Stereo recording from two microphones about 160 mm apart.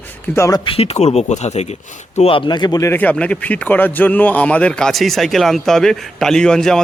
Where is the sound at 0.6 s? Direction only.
40° left (ahead or behind); by 6.8 s 5° left (ahead or behind).